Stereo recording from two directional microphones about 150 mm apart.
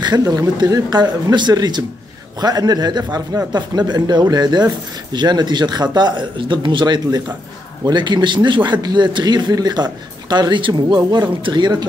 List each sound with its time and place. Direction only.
0.0 s speech: 25° right (ahead or behind)